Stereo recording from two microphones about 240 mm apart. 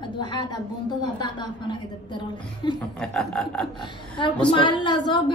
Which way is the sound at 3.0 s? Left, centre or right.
Centre.